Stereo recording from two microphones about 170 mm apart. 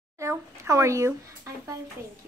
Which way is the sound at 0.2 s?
15° right (ahead or behind).